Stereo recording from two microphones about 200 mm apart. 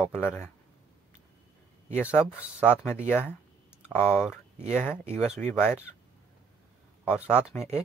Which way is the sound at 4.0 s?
5° right (ahead or behind).